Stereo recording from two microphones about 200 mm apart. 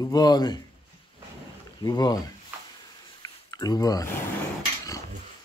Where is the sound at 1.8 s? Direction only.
20° left (ahead or behind).